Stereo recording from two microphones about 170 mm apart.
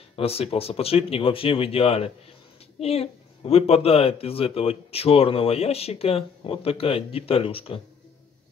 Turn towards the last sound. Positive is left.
turn(degrees=35)  # may be behind; listen again after turning